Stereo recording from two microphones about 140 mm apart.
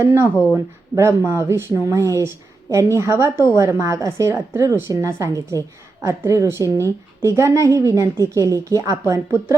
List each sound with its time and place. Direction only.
0.0 s a woman's voice: 20° right (ahead or behind)